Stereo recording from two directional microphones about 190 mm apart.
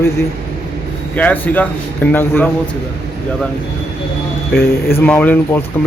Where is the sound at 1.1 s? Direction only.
10° left (ahead or behind).